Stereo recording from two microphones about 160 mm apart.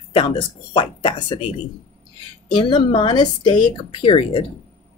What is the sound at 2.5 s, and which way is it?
Speech, 30° left (ahead or behind).